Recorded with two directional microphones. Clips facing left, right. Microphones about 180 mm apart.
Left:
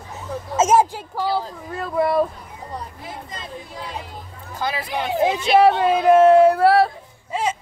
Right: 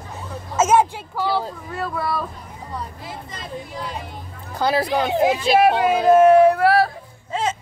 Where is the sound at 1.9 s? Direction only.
20° left (ahead or behind).